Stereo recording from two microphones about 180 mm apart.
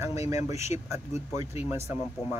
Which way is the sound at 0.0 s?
15° right (ahead or behind).